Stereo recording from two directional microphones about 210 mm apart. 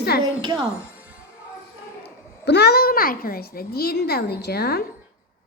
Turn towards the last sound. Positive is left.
turn(degrees=50)  # may be behind; listen again after turning